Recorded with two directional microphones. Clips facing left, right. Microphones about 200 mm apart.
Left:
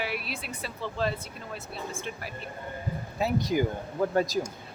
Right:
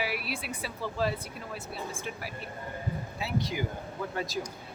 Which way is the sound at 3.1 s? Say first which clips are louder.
Left 7 dB; 45° left (ahead or behind).